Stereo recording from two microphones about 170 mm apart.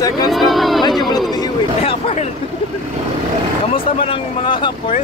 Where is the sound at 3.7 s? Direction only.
30° left (ahead or behind).